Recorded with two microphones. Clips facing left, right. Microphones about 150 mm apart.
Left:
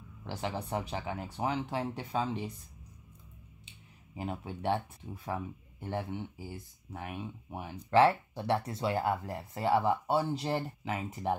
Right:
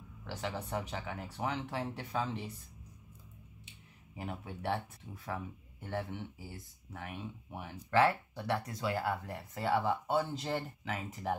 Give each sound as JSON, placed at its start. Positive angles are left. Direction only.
{"t": 0.3, "sound": "speech", "side_deg": 30}
{"t": 4.2, "sound": "speech", "side_deg": 25}